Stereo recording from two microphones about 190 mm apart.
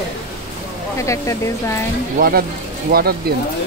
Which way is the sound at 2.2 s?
55° right (ahead or behind).